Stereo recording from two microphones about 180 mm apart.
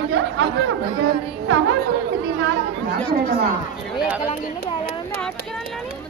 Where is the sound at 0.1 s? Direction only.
90° right.